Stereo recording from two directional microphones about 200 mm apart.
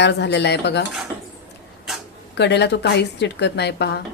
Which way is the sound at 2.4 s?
60° left (ahead or behind).